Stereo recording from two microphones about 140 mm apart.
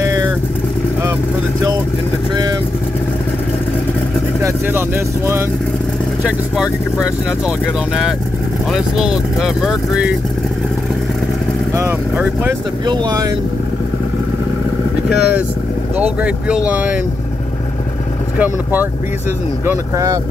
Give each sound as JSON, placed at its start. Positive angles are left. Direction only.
{"t": 0.0, "sound": "vehicle", "side_deg": -25}
{"t": 4.4, "sound": "speech", "side_deg": -20}
{"t": 6.2, "sound": "speech", "side_deg": -5}
{"t": 8.7, "sound": "speech", "side_deg": -5}
{"t": 11.7, "sound": "speech", "side_deg": -20}
{"t": 12.8, "sound": "speech", "side_deg": -30}
{"t": 15.0, "sound": "speech", "side_deg": -5}
{"t": 18.4, "sound": "speech", "side_deg": -10}